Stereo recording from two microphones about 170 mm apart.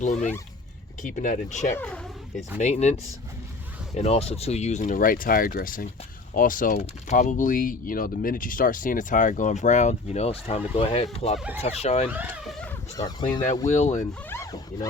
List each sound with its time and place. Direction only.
0.0 s speech: 45° left (ahead or behind)
1.7 s speech: 5° left (ahead or behind)
2.6 s speech: 40° left (ahead or behind)
12.1 s speech: 10° right (ahead or behind)
13.0 s speech: 25° left (ahead or behind)
13.7 s speech: 45° left (ahead or behind)
14.3 s zipper: 15° left (ahead or behind)